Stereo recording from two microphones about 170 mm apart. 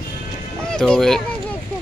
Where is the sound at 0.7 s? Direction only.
5° left (ahead or behind).